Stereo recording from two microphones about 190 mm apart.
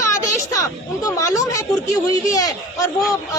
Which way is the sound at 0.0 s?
15° left (ahead or behind).